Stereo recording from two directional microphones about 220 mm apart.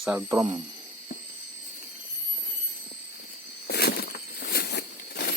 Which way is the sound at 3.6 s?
45° left (ahead or behind).